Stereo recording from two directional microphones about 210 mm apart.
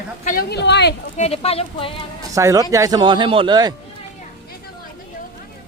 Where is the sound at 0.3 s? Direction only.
50° left (ahead or behind).